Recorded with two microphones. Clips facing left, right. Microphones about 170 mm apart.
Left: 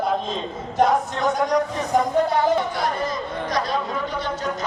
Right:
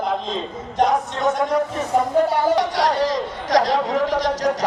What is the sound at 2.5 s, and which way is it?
Speech, 90° right.